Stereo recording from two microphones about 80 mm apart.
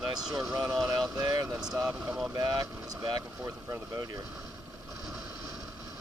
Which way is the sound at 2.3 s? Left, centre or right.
Right.